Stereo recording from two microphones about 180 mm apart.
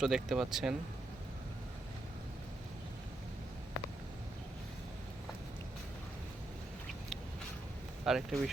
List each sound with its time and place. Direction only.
0.0 s speech: centre (ahead or behind)
8.0 s speech: centre (ahead or behind)